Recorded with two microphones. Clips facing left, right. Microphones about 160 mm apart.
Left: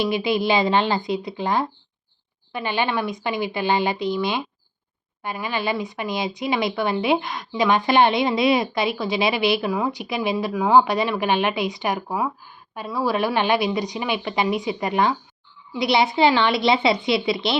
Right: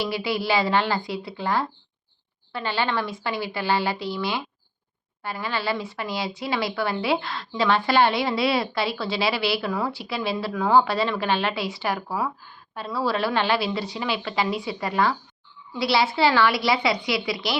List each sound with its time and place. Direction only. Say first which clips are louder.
0.0 s a woman's voice: left 5 dB; 20° left (ahead or behind)